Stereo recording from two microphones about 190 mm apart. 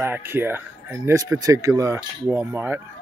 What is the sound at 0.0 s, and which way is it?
Speech, 10° right (ahead or behind).